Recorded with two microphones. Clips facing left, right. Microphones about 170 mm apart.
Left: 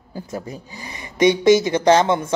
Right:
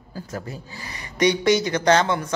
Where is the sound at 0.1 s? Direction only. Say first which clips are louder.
Left 3 dB; 20° left (ahead or behind).